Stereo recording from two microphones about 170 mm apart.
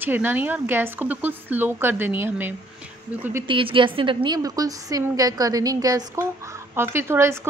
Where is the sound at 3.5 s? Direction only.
30° right (ahead or behind).